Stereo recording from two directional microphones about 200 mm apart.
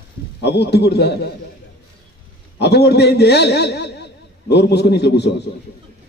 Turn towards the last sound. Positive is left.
turn(degrees=55)  # may be behind; listen again after turning